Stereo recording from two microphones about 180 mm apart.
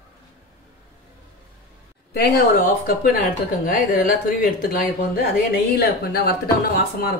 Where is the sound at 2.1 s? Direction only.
60° left (ahead or behind).